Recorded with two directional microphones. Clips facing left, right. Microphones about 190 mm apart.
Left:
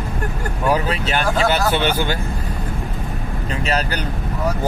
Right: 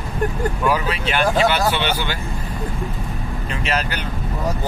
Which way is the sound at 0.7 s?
40° left (ahead or behind).